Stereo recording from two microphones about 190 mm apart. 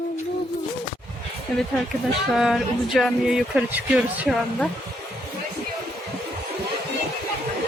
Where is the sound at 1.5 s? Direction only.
Centre (ahead or behind).